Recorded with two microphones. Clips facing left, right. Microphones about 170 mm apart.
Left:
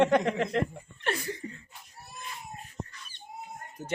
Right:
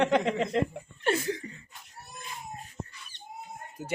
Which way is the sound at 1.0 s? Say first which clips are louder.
Right 5 dB; 25° right (ahead or behind).